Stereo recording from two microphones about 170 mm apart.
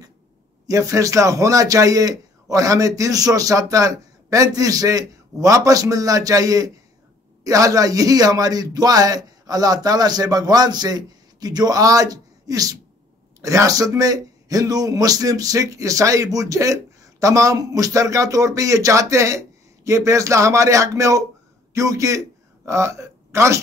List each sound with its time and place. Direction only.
0.7 s a man's voice: 20° right (ahead or behind)